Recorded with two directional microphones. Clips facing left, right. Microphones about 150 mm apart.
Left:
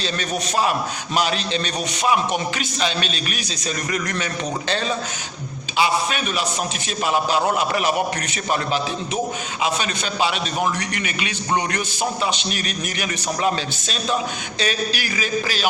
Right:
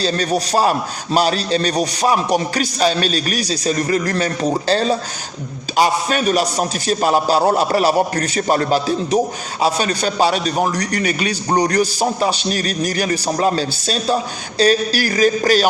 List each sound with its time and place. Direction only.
0.0 s a man's voice: 35° right (ahead or behind)